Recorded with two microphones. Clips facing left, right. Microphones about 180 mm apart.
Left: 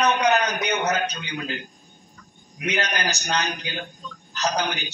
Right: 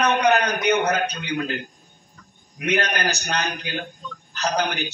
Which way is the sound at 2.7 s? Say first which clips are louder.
Right 3 dB; 55° right (ahead or behind).